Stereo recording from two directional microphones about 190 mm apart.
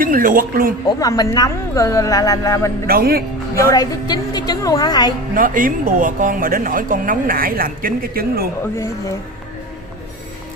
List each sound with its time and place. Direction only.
0.0 s a woman's voice: 45° right (ahead or behind)
0.8 s a woman's voice: 20° left (ahead or behind)
2.9 s a woman's voice: 50° right (ahead or behind)
3.7 s a woman's voice: 20° left (ahead or behind)
5.3 s a woman's voice: 45° right (ahead or behind)